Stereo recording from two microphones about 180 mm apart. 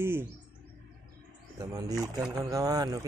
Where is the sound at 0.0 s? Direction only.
15° right (ahead or behind).